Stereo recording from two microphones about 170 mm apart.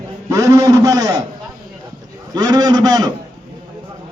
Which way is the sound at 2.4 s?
25° right (ahead or behind).